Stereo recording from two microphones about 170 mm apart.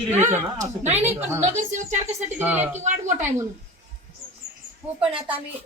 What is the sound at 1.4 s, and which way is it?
Speech, 45° right (ahead or behind).